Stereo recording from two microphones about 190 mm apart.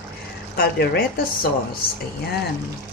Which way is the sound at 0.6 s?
55° left (ahead or behind).